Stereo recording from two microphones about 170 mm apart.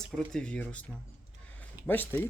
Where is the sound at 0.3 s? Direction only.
5° left (ahead or behind).